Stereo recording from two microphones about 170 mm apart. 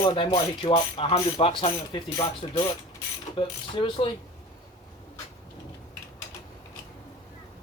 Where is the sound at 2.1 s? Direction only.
30° left (ahead or behind).